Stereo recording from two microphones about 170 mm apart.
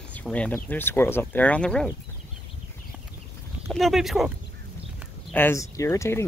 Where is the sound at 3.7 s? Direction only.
Centre (ahead or behind).